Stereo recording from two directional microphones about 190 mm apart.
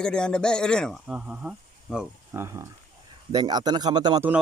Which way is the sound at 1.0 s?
5° right (ahead or behind).